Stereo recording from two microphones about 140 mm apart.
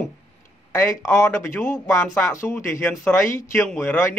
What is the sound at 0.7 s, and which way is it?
Speech, 20° left (ahead or behind).